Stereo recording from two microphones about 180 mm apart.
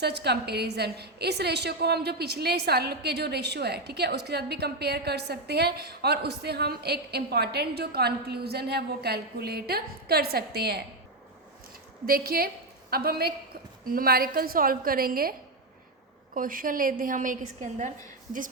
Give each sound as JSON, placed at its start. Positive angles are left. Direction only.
{"t": 0.0, "sound": "a woman's voice", "side_deg": -65}
{"t": 12.0, "sound": "a woman's voice", "side_deg": -55}